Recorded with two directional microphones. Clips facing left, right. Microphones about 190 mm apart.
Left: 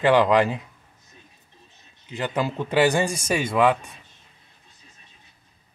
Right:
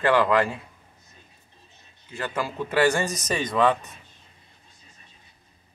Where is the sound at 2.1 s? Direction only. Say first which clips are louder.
Left 4 dB; 20° left (ahead or behind).